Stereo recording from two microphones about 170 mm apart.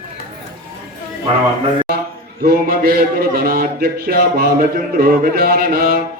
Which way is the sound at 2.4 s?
60° right (ahead or behind).